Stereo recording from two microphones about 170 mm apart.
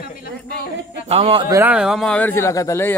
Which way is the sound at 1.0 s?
35° right (ahead or behind).